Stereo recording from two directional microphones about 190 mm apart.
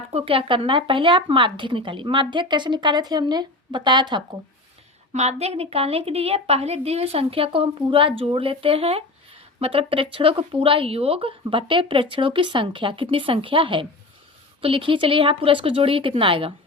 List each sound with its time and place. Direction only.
0.1 s a woman's voice: 30° right (ahead or behind)
5.1 s a woman's voice: 35° right (ahead or behind)